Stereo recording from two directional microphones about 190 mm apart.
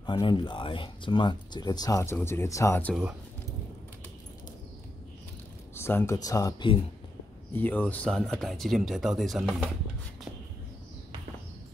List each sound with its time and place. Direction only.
0.0 s speech: 25° left (ahead or behind)
5.8 s speech: 15° left (ahead or behind)
7.5 s speech: 10° left (ahead or behind)